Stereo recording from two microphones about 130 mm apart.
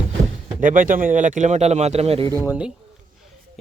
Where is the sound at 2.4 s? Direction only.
10° right (ahead or behind).